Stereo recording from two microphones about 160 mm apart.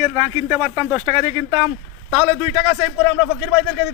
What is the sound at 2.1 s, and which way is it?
Speech, 10° right (ahead or behind).